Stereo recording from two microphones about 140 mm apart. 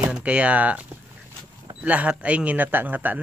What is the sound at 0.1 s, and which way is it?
Speech, 10° right (ahead or behind).